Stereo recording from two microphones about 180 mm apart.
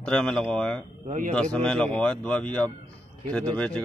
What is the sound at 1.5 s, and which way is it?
Speech, 5° left (ahead or behind).